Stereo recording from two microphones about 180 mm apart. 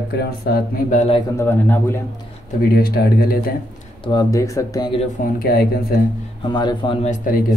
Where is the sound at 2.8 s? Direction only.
60° left (ahead or behind).